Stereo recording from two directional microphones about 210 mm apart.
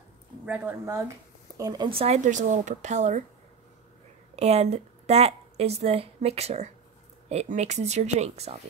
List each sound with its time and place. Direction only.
0.5 s speech: 10° right (ahead or behind); by 3.3 s 35° right (ahead or behind)
4.4 s a woman's voice: 30° right (ahead or behind)